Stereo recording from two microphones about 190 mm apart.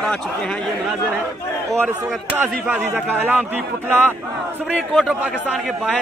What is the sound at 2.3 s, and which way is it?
A man's voice, 10° right (ahead or behind).